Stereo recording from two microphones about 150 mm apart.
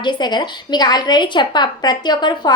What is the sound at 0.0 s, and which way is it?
A woman's voice, 30° left (ahead or behind).